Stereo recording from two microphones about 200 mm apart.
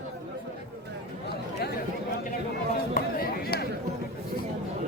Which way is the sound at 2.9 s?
50° left (ahead or behind).